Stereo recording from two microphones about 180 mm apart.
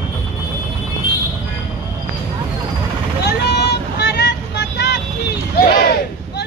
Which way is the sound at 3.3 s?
65° left (ahead or behind).